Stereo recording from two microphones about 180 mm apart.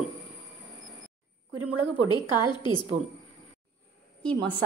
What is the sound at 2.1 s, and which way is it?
Speech, 25° left (ahead or behind).